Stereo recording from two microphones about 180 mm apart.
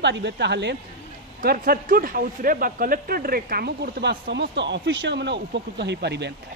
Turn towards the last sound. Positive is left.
turn(degrees=-70)  # may be behind; listen again after turning